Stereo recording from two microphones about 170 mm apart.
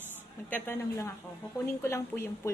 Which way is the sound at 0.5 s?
15° left (ahead or behind).